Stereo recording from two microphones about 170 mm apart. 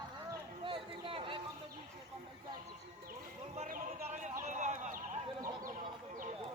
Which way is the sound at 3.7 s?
45° right (ahead or behind).